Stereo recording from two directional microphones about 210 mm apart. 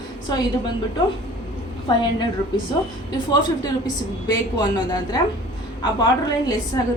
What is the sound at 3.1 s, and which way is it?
A woman's voice, 20° left (ahead or behind).